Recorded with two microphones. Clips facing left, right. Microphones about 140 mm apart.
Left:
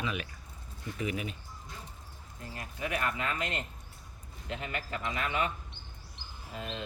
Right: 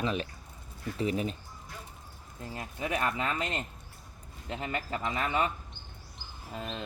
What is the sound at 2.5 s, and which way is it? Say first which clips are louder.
Speech: right 2 dB; 25° right (ahead or behind).